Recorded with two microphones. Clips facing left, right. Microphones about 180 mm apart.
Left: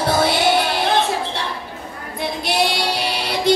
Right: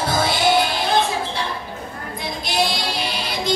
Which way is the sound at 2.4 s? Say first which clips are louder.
Left 2 dB; 65° left (ahead or behind).